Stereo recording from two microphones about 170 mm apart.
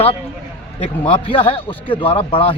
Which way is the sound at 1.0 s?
35° left (ahead or behind).